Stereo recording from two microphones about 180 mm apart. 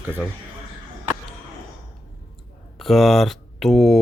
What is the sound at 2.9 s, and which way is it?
Speech, centre (ahead or behind).